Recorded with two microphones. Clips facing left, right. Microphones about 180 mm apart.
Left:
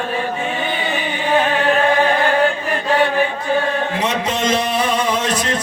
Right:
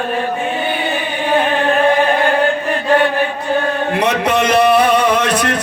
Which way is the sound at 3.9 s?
65° right (ahead or behind).